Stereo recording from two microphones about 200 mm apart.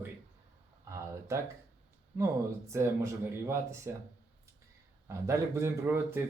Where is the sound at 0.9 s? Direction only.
15° right (ahead or behind).